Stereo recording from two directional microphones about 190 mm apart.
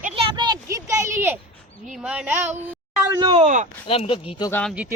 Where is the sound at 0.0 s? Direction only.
30° right (ahead or behind); by 1.4 s 10° right (ahead or behind).